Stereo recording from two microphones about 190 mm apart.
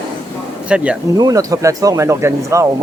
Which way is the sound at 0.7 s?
5° right (ahead or behind).